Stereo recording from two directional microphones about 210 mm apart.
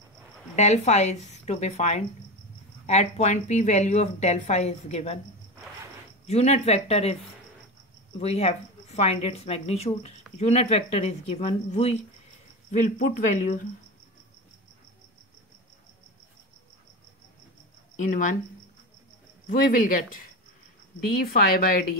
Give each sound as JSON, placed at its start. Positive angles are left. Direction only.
{"t": 0.6, "sound": "speech", "side_deg": 30}
{"t": 6.2, "sound": "speech", "side_deg": 30}
{"t": 8.2, "sound": "speech", "side_deg": 30}
{"t": 17.9, "sound": "speech", "side_deg": 40}
{"t": 19.4, "sound": "speech", "side_deg": 40}
{"t": 21.3, "sound": "speech", "side_deg": 45}